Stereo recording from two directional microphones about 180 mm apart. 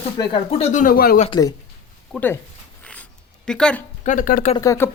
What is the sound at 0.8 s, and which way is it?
Speech, 55° left (ahead or behind).